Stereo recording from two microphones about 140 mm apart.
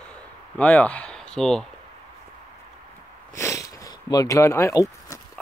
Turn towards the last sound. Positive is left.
turn(degrees=20)  # may be behind; listen again after turning